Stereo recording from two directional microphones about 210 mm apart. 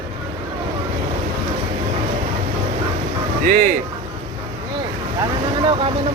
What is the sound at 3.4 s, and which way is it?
Speech, 40° right (ahead or behind).